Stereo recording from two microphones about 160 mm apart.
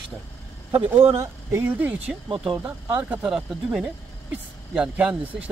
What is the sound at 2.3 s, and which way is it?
Speech, 35° right (ahead or behind).